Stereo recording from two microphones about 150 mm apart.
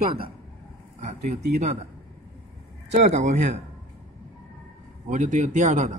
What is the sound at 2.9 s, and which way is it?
Speech, 50° right (ahead or behind).